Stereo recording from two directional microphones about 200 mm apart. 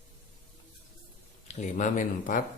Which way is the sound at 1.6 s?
40° left (ahead or behind).